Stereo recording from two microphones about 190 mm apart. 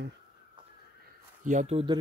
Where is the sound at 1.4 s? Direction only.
35° right (ahead or behind).